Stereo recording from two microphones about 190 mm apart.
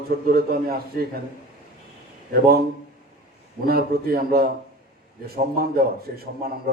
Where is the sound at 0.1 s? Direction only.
50° right (ahead or behind).